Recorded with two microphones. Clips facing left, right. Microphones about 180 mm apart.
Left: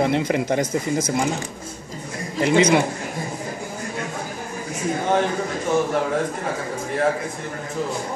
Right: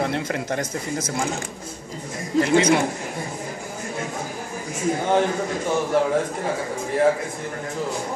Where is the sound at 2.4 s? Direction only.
15° left (ahead or behind).